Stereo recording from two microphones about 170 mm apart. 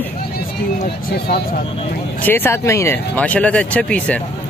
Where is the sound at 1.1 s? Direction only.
70° left (ahead or behind).